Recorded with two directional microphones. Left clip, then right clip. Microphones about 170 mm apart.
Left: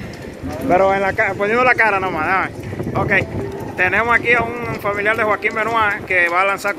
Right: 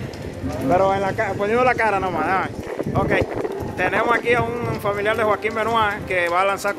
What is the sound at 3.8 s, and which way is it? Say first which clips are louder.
Speech: left 4 dB; 5° right (ahead or behind).